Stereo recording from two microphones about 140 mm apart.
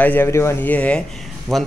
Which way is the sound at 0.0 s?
15° left (ahead or behind).